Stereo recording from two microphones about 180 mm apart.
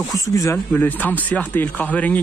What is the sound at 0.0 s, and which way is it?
Speech, 20° left (ahead or behind).